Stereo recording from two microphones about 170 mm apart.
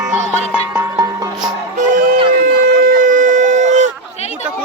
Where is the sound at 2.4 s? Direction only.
55° right (ahead or behind).